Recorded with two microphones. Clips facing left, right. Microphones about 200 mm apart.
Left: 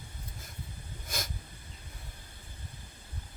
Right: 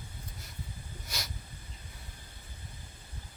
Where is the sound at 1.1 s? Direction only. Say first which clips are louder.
Left 4 dB; 50° left (ahead or behind).